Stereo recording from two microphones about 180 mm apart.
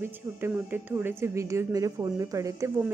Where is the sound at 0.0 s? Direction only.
10° right (ahead or behind).